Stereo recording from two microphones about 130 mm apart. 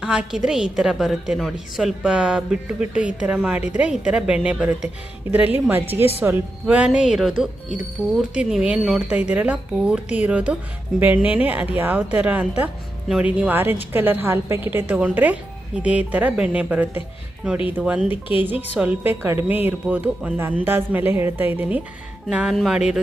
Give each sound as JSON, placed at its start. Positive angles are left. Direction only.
{"t": 0.0, "sound": "a woman's voice", "side_deg": -5}